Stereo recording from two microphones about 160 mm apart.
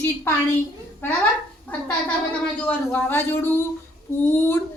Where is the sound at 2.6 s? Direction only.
10° left (ahead or behind).